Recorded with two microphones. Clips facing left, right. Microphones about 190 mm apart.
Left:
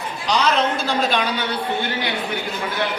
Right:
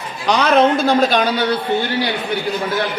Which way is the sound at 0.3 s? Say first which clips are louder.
Right 6 dB; 60° right (ahead or behind).